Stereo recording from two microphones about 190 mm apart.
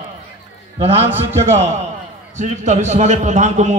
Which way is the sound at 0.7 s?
35° right (ahead or behind).